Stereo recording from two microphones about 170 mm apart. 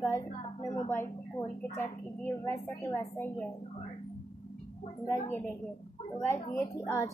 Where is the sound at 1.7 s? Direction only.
15° left (ahead or behind).